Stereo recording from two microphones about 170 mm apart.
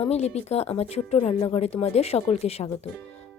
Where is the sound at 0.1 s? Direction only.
40° left (ahead or behind).